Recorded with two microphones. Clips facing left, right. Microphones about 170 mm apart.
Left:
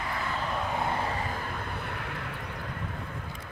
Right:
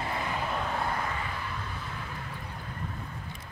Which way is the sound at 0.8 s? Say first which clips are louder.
Left 2 dB; 30° left (ahead or behind).